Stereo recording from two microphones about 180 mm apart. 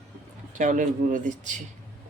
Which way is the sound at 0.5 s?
45° right (ahead or behind).